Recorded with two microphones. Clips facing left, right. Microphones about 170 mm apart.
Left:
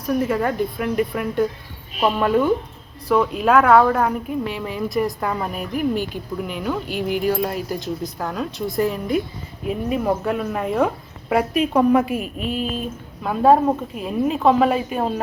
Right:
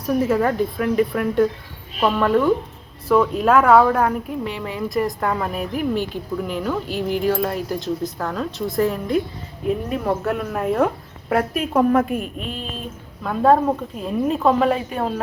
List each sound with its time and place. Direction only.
0.0 s a woman's voice: 5° right (ahead or behind)
2.0 s a woman's voice: 15° left (ahead or behind)
3.1 s a woman's voice: centre (ahead or behind)
14.8 s a woman's voice: 15° left (ahead or behind)